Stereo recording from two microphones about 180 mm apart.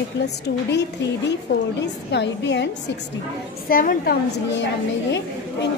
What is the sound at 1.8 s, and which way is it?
Speech, 80° left.